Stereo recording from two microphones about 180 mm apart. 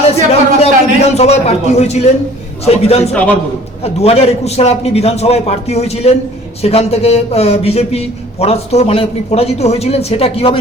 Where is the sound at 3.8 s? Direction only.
35° left (ahead or behind).